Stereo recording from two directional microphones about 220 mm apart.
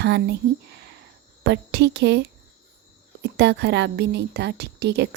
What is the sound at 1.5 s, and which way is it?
Speech, 50° right (ahead or behind).